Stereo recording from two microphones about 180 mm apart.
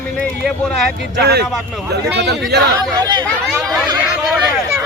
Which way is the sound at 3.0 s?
25° right (ahead or behind).